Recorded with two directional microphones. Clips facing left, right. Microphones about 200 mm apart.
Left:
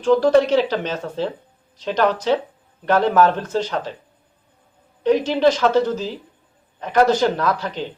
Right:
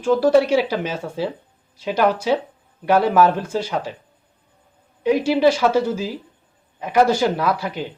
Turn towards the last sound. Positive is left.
turn(degrees=-10)  # may be behind; listen again after turning